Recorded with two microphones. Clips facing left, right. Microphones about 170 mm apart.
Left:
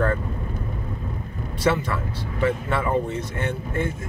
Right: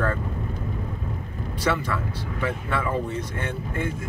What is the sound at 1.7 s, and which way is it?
Speech, 25° left (ahead or behind).